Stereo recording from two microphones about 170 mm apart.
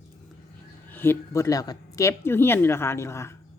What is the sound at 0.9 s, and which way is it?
Speech, 10° left (ahead or behind).